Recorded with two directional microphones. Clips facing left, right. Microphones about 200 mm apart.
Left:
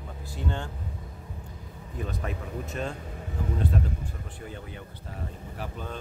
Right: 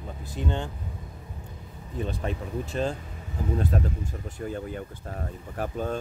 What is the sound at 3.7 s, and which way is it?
Speech, 45° right (ahead or behind).